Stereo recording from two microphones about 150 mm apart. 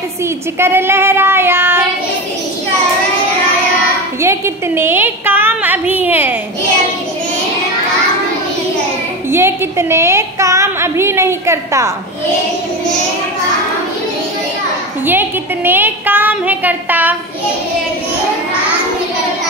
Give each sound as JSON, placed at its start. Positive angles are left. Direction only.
{"t": 0.6, "sound": "a woman's voice", "side_deg": -15}
{"t": 4.2, "sound": "a woman's voice", "side_deg": -15}
{"t": 9.3, "sound": "a woman's voice", "side_deg": -15}
{"t": 15.0, "sound": "a woman's voice", "side_deg": -15}